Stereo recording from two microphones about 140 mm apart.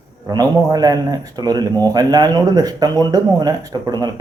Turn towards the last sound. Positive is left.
turn(degrees=-30)  # may be behind; listen again after turning